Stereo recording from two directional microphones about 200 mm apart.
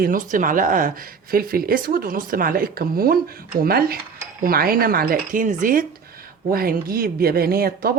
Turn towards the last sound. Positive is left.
turn(degrees=-50)  # may be behind; listen again after turning